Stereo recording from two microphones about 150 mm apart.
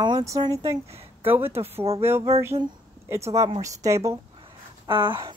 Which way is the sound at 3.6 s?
20° right (ahead or behind).